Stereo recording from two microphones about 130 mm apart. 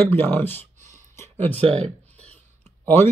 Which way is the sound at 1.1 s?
20° left (ahead or behind).